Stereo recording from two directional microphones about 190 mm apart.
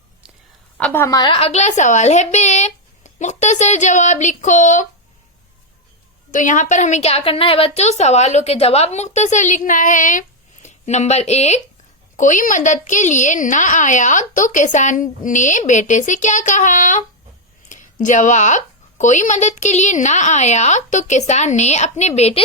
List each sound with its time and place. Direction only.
0.8 s a woman's voice: 10° left (ahead or behind); by 4.9 s 40° left (ahead or behind)
6.3 s a woman's voice: 40° left (ahead or behind)